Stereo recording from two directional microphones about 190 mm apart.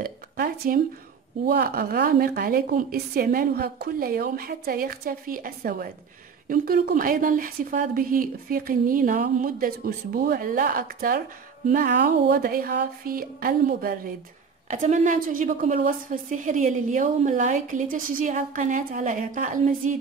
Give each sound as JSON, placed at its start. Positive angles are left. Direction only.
{"t": 0.0, "sound": "a sound", "side_deg": -50}
{"t": 1.4, "sound": "a woman's voice", "side_deg": -55}
{"t": 14.7, "sound": "a woman's voice", "side_deg": -40}